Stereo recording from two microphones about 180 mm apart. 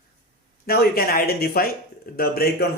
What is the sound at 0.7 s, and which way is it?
A man's voice, 55° left (ahead or behind).